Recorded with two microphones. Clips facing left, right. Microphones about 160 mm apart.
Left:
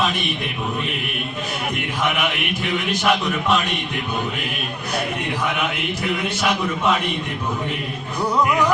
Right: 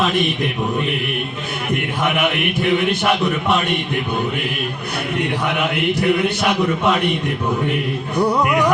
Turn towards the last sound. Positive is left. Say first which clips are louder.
# right 4 dB
turn(degrees=-65)  # may be behind; listen again after turning